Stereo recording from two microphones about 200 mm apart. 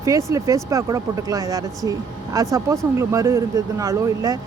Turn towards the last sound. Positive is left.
turn(degrees=-15)  # may be behind; listen again after turning